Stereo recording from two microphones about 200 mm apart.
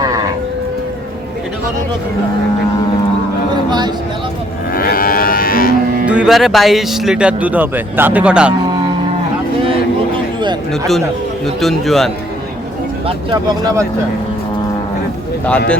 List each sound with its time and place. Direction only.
3.7 s a sound: 20° right (ahead or behind)
4.7 s moo: 45° left (ahead or behind)
6.1 s speech: 5° right (ahead or behind)
11.6 s speech: centre (ahead or behind)
13.6 s speech: 20° right (ahead or behind)